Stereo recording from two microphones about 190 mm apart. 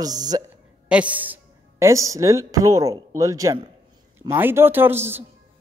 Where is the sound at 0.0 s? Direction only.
20° right (ahead or behind).